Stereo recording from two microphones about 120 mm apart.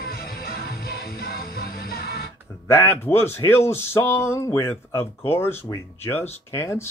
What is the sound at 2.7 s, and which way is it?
Speech, 20° left (ahead or behind).